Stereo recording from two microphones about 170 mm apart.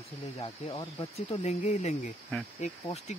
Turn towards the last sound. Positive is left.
turn(degrees=40)  # may be behind; listen again after turning